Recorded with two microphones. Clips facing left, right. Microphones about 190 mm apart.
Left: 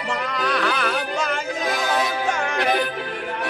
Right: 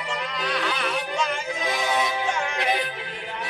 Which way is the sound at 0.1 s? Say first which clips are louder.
Left 5 dB; 55° left (ahead or behind).